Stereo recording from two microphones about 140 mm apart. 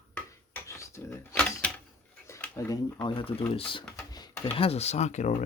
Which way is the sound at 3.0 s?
35° left (ahead or behind).